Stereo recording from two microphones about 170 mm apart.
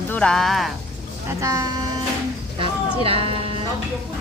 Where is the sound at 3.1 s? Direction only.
35° right (ahead or behind).